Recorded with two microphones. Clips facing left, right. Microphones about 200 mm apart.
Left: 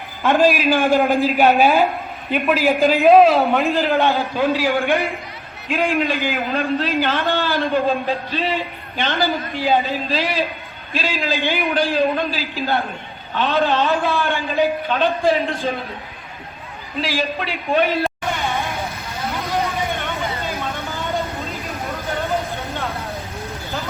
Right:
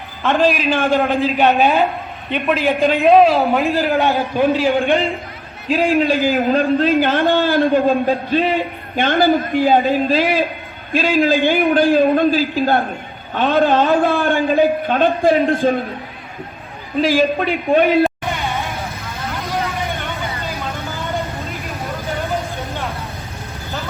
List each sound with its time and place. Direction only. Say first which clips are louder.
0.2 s a man's voice: even; 10° left (ahead or behind)
3.8 s a man's voice: right 1 dB; 10° right (ahead or behind)
5.6 s a man's voice: right 5 dB; 35° right (ahead or behind)
17.0 s a man's voice: right 8 dB; 50° right (ahead or behind)